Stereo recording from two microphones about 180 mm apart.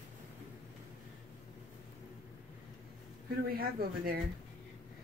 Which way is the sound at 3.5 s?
55° right (ahead or behind).